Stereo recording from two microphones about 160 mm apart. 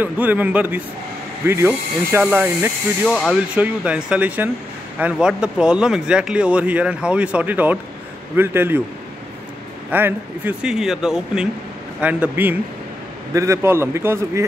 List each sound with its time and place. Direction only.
0.0 s speech: 10° right (ahead or behind)
3.1 s speech: centre (ahead or behind)
9.8 s speech: 10° right (ahead or behind)